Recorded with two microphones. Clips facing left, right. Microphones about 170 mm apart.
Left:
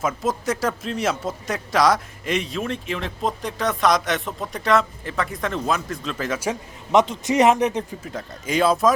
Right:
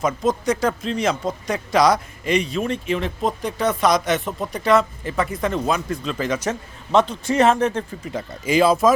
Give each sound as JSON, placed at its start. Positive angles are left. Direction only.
{"t": 0.0, "sound": "speech", "side_deg": 5}
{"t": 6.5, "sound": "a man's voice", "side_deg": 20}
{"t": 8.0, "sound": "speech", "side_deg": 0}